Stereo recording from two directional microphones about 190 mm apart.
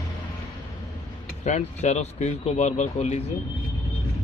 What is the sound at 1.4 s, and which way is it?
Speech, 40° left (ahead or behind).